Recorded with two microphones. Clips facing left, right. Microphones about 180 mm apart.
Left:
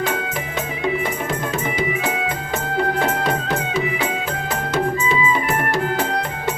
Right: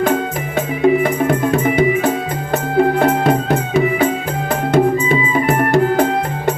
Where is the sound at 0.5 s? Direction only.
55° right (ahead or behind).